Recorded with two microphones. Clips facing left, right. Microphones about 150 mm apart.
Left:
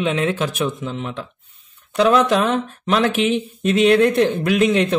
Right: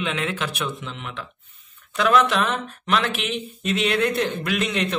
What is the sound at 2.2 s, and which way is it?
Speech, 45° left (ahead or behind).